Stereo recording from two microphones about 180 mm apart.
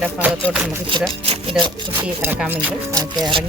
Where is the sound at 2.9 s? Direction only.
20° right (ahead or behind).